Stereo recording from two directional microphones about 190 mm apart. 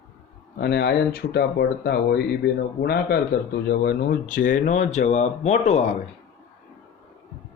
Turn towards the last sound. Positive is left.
turn(degrees=35)  # may be behind; listen again after turning